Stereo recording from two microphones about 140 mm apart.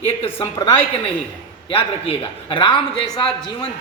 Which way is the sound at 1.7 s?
40° left (ahead or behind).